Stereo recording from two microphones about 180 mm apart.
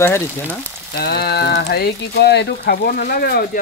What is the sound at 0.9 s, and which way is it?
Speech, 60° left (ahead or behind).